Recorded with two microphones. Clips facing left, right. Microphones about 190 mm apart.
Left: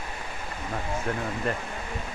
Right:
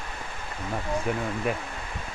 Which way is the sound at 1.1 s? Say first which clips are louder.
Right 1 dB; 5° right (ahead or behind).